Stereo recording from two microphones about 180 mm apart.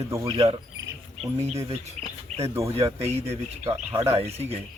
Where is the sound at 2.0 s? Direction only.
35° right (ahead or behind).